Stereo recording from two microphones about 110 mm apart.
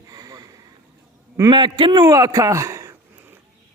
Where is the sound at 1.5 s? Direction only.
45° right (ahead or behind); by 2.9 s 25° right (ahead or behind).